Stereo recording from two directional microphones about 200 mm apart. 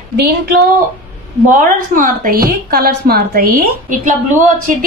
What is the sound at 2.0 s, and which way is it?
A woman's voice, 45° right (ahead or behind).